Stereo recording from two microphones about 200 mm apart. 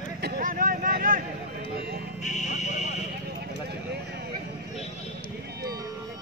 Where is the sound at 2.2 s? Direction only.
35° left (ahead or behind).